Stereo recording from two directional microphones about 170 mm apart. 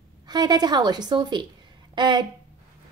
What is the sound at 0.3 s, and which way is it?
A woman's voice, 25° right (ahead or behind).